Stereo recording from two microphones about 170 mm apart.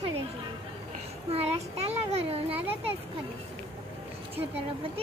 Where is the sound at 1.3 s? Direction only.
35° right (ahead or behind).